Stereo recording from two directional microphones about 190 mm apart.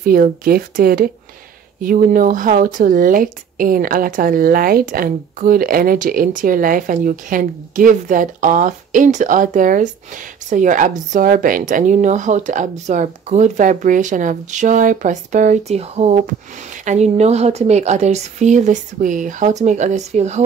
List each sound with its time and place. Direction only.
0.0 s a woman's voice: 50° right (ahead or behind)